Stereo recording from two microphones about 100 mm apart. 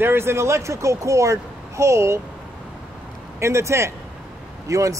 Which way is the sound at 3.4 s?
30° right (ahead or behind).